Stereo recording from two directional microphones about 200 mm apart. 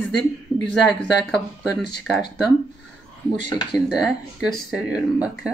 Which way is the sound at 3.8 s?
Centre (ahead or behind).